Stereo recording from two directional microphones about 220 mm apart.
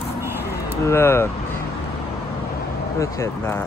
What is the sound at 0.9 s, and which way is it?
Speech, 10° left (ahead or behind).